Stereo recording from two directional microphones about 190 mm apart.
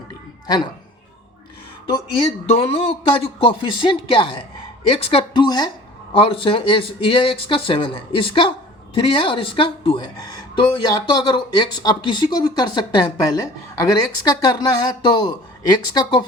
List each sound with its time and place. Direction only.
0.4 s speech: 20° left (ahead or behind)
2.1 s speech: 30° left (ahead or behind)